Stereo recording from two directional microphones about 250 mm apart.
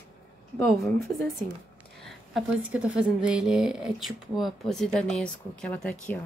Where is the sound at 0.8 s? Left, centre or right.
Centre.